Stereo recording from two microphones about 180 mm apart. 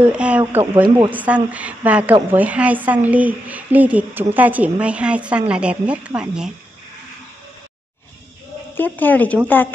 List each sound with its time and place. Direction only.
0.0 s a woman's voice: 5° right (ahead or behind)
0.8 s speech: 25° right (ahead or behind)
1.1 s a woman's voice: 10° right (ahead or behind)
8.7 s speech: 10° left (ahead or behind)